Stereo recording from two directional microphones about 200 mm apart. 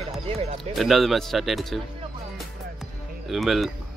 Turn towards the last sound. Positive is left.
turn(degrees=0)  # may be behind; listen again after turning